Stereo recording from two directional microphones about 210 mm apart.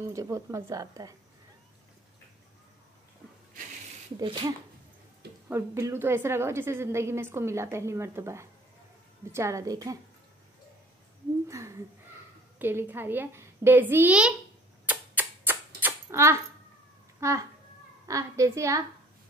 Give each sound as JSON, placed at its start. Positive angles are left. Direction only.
{"t": 0.1, "sound": "a woman's voice", "side_deg": -15}
{"t": 4.2, "sound": "speech", "side_deg": -25}
{"t": 5.5, "sound": "a woman's voice", "side_deg": -15}
{"t": 11.4, "sound": "a woman's voice", "side_deg": -15}
{"t": 14.9, "sound": "a sound", "side_deg": -10}
{"t": 17.2, "sound": "a child's voice", "side_deg": -15}